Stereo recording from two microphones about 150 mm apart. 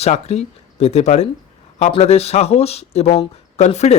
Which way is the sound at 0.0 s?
45° left (ahead or behind).